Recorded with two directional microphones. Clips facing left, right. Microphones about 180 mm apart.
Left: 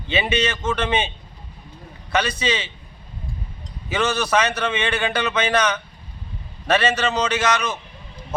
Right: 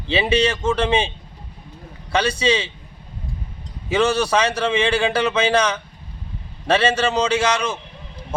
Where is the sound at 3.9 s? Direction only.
30° right (ahead or behind).